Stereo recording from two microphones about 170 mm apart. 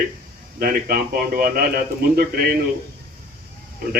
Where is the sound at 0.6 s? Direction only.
60° right (ahead or behind).